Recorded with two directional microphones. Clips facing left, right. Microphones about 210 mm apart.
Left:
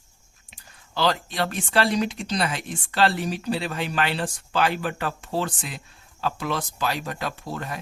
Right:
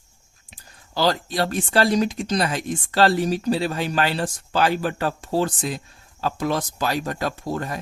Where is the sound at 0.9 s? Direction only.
40° right (ahead or behind).